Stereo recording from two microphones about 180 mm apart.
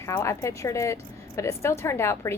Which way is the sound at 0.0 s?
15° left (ahead or behind).